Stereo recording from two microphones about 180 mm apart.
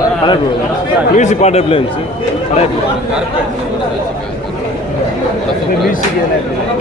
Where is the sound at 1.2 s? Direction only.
40° left (ahead or behind).